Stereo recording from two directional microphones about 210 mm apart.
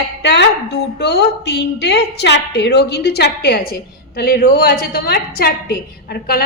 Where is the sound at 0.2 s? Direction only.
55° left (ahead or behind).